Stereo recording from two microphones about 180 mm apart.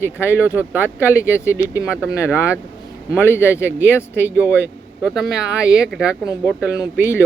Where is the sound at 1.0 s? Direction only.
15° left (ahead or behind).